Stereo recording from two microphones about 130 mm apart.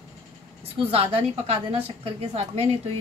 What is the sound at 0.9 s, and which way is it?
A woman's voice, 50° right (ahead or behind).